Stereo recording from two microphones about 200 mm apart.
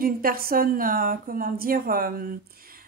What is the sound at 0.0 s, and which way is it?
Speech, 45° right (ahead or behind).